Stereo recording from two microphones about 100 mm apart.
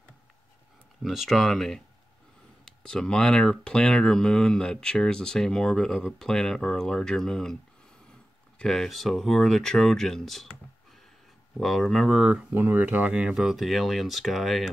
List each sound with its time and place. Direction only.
1.0 s speech: centre (ahead or behind)
8.5 s speech: 5° left (ahead or behind)
12.5 s speech: 20° right (ahead or behind); by 14.7 s centre (ahead or behind)